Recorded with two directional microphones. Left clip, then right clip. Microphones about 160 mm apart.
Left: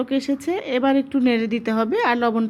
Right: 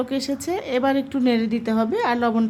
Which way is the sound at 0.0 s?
Centre (ahead or behind).